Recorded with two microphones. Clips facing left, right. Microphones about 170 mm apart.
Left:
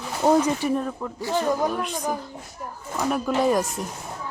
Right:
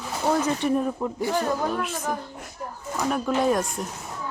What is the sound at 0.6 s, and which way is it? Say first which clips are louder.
Speech: right 1 dB; 5° left (ahead or behind).